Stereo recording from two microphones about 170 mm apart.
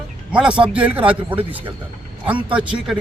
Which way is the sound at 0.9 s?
10° right (ahead or behind).